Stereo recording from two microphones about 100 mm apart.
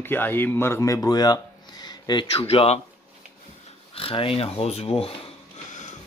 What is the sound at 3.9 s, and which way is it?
Speech, 70° left (ahead or behind).